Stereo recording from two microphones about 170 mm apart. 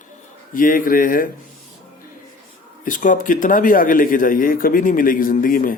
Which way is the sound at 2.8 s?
50° left (ahead or behind).